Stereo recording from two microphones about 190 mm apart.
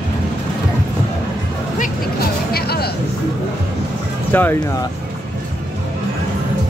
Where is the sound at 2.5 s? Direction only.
55° left (ahead or behind).